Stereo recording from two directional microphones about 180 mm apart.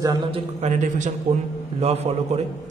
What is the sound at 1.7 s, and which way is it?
Speech, 35° right (ahead or behind).